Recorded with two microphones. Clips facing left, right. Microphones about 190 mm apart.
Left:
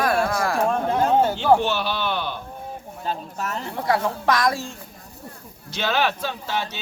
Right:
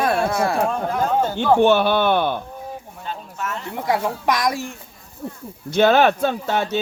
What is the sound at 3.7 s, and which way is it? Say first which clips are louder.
Speech: right 1 dB; 15° right (ahead or behind).